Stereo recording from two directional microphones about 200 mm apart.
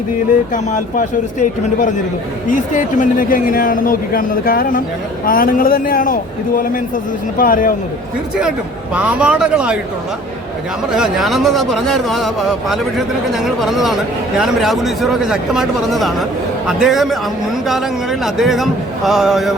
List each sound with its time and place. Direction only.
0.5 s speech: 40° left (ahead or behind)
7.3 s speech: 45° left (ahead or behind)
8.4 s speech: 5° right (ahead or behind)
10.9 s speech: centre (ahead or behind)